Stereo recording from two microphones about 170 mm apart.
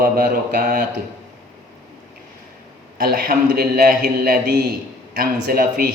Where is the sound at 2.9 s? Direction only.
65° right (ahead or behind).